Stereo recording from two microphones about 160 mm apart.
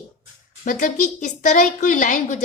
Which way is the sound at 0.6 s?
55° left (ahead or behind).